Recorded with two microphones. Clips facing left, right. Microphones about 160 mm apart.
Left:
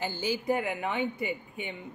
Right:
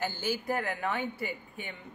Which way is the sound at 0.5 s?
10° left (ahead or behind).